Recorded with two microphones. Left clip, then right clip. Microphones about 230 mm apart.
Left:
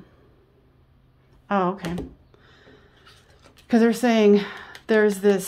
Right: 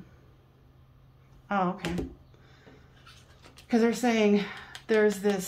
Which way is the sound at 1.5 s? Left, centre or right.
Left.